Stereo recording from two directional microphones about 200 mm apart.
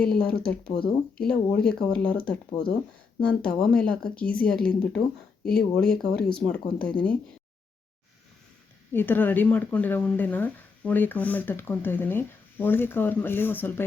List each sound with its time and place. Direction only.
0.0 s speech: 5° left (ahead or behind)
0.7 s speech: 25° left (ahead or behind)
1.1 s speech: 5° left (ahead or behind)
8.9 s speech: 10° left (ahead or behind)